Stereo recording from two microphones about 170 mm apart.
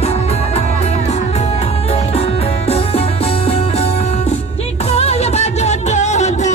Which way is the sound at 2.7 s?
35° left (ahead or behind).